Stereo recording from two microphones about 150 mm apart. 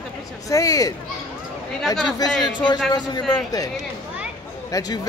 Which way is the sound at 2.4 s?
30° left (ahead or behind).